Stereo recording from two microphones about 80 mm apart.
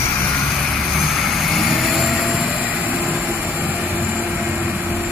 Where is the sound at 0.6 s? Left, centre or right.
Centre.